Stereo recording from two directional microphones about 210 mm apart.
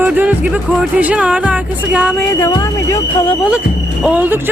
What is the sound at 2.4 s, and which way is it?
Speech, 15° left (ahead or behind).